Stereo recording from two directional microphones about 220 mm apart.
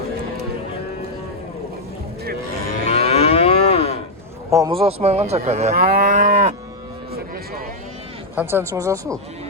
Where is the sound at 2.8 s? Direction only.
25° left (ahead or behind).